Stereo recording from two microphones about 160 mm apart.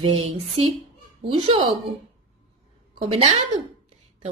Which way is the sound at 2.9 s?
35° right (ahead or behind).